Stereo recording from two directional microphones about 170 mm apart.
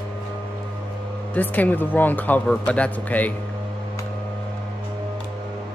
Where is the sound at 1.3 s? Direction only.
10° left (ahead or behind).